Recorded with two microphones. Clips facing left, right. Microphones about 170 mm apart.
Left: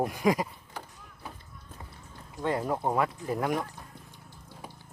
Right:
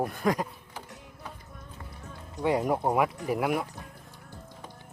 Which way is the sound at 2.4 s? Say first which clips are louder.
Right 3 dB; 15° right (ahead or behind).